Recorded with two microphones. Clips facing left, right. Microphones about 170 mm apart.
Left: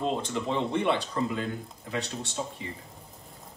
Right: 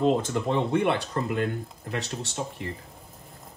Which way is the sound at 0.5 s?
55° right (ahead or behind).